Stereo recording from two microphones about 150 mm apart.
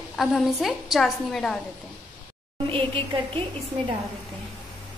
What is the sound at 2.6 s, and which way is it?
Speech, 35° right (ahead or behind).